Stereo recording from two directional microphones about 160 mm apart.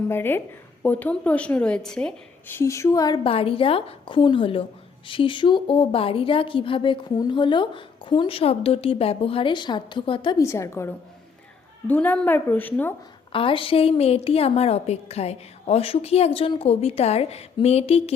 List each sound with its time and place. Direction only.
0.1 s a woman's voice: 15° left (ahead or behind)
3.2 s a woman's voice: 35° left (ahead or behind)
10.4 s a woman's voice: 15° left (ahead or behind)
13.3 s a woman's voice: 35° left (ahead or behind)